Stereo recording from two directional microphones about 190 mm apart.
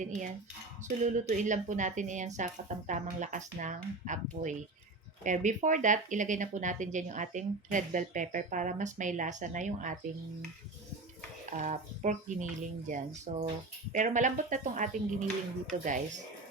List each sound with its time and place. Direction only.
0.0 s speech: 40° right (ahead or behind)
11.5 s speech: 40° right (ahead or behind)